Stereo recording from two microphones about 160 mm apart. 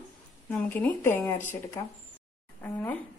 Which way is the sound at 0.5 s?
10° left (ahead or behind).